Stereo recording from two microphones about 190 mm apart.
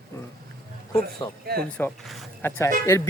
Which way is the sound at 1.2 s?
20° left (ahead or behind).